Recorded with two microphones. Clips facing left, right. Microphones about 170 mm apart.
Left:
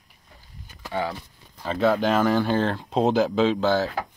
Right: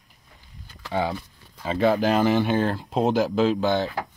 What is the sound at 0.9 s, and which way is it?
Speech, 20° right (ahead or behind).